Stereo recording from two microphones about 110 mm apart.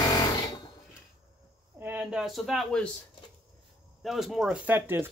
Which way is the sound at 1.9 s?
10° right (ahead or behind).